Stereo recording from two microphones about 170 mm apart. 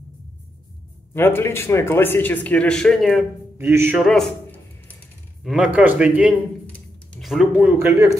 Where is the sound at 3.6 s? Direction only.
10° right (ahead or behind).